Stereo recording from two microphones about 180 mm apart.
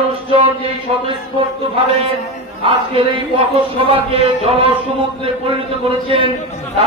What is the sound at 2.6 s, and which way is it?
Speech, 30° right (ahead or behind).